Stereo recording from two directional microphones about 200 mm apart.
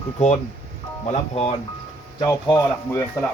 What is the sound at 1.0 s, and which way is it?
Speech, 30° left (ahead or behind).